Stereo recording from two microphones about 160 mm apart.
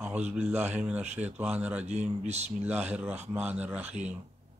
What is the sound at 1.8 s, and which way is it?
Speech, 45° right (ahead or behind).